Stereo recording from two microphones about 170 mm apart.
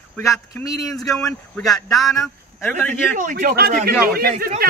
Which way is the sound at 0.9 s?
Centre (ahead or behind).